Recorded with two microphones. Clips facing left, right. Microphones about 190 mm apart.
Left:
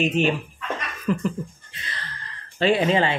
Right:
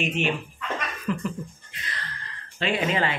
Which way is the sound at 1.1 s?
40° left (ahead or behind).